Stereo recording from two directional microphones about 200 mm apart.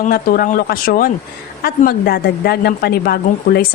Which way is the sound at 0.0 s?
45° left (ahead or behind).